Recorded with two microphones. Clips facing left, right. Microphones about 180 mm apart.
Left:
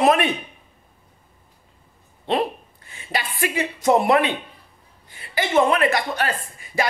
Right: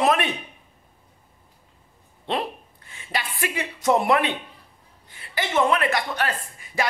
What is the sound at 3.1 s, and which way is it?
Speech, 5° left (ahead or behind).